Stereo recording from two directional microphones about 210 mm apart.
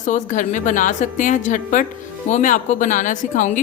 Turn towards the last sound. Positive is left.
turn(degrees=35)  # may be behind; listen again after turning